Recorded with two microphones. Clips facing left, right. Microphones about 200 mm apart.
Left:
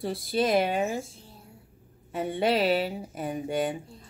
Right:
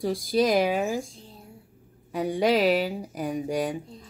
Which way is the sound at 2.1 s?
Centre (ahead or behind).